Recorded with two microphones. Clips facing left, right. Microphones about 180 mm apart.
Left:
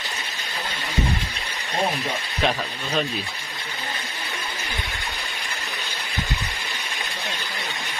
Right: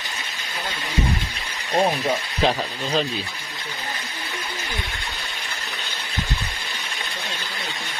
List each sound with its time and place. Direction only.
2.4 s speech: 30° right (ahead or behind)